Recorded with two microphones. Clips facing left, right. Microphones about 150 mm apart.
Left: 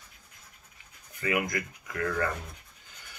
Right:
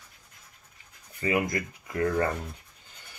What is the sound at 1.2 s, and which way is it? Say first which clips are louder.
Speech: right 3 dB; 30° right (ahead or behind).